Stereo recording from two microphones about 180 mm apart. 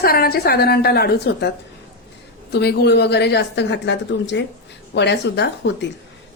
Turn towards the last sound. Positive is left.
turn(degrees=70)  # may be behind; listen again after turning